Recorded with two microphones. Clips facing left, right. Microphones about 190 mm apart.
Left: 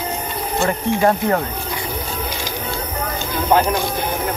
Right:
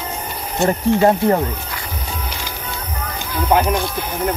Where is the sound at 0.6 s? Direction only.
20° right (ahead or behind).